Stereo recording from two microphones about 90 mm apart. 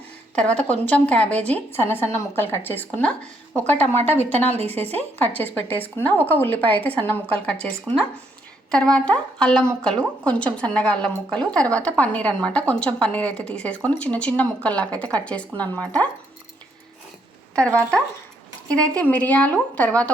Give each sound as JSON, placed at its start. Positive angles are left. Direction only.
{"t": 0.3, "sound": "a woman's voice", "side_deg": 15}
{"t": 8.7, "sound": "a woman's voice", "side_deg": 10}
{"t": 17.5, "sound": "a woman's voice", "side_deg": 10}